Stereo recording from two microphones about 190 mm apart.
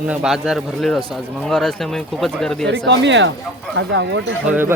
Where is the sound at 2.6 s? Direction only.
70° right (ahead or behind).